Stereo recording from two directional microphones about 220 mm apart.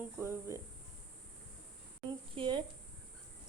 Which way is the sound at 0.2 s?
10° right (ahead or behind).